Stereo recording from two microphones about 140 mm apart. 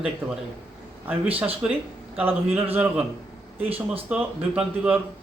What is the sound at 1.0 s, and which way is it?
Speech, 10° right (ahead or behind).